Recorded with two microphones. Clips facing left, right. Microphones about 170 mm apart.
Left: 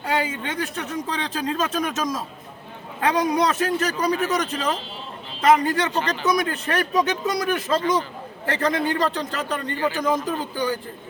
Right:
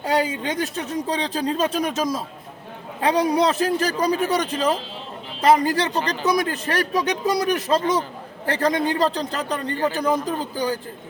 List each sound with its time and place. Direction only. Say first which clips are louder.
0.0 s speech: right 3 dB; 35° right (ahead or behind)